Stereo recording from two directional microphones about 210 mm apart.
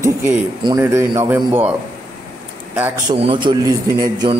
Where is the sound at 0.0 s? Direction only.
10° right (ahead or behind).